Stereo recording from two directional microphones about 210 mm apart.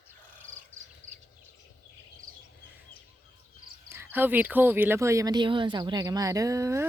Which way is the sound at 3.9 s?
10° right (ahead or behind).